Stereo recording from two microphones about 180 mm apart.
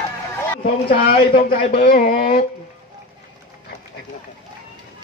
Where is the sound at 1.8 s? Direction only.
50° left (ahead or behind).